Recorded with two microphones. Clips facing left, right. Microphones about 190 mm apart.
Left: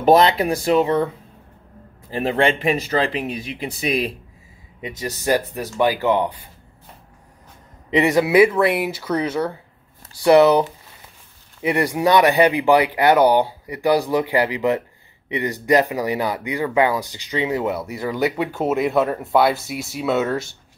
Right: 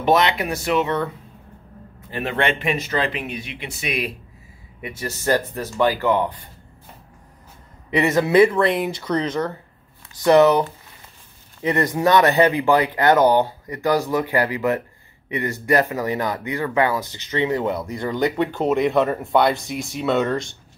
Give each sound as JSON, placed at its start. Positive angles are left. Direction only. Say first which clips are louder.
{"t": 0.0, "sound": "speech", "louder": "left 4 dB", "side_deg": 35}
{"t": 2.0, "sound": "speech", "louder": "left 4 dB", "side_deg": 30}
{"t": 4.8, "sound": "speech", "louder": "left 1 dB", "side_deg": 15}
{"t": 7.9, "sound": "speech", "louder": "left 1 dB", "side_deg": 15}